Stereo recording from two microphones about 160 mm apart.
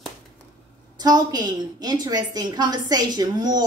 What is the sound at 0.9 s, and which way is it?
A woman's voice, 25° right (ahead or behind).